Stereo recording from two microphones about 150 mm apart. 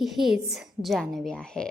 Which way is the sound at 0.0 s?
Centre (ahead or behind).